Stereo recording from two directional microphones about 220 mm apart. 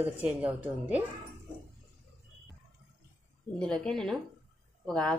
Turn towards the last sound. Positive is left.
turn(degrees=5)  # may be behind; listen again after turning